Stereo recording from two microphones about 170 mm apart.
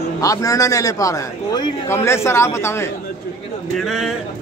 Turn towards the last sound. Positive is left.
turn(degrees=0)  # may be behind; listen again after turning